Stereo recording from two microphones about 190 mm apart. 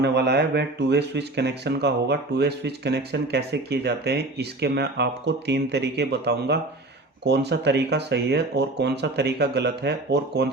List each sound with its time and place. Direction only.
0.0 s speech: 60° right (ahead or behind)